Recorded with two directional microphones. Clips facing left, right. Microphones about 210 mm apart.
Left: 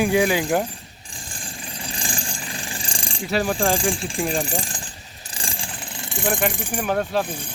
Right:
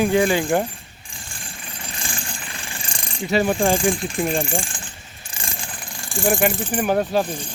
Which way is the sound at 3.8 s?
30° left (ahead or behind).